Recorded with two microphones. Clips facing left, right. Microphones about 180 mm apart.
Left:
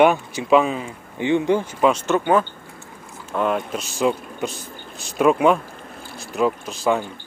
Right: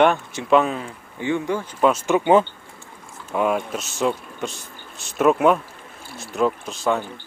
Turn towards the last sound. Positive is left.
turn(degrees=0)  # may be behind; listen again after turning